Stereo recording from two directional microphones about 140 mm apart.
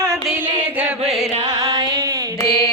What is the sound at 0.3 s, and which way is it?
Carnatic music, 10° right (ahead or behind).